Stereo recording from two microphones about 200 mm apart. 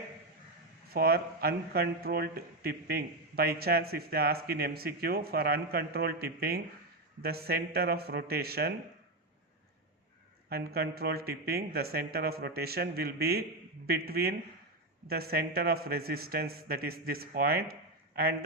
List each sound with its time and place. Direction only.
0.9 s speech: 50° right (ahead or behind)
10.5 s speech: 50° right (ahead or behind)